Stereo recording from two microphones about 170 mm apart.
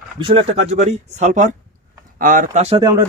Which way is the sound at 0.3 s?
35° right (ahead or behind).